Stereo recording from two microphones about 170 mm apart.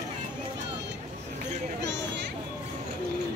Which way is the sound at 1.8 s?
90° right.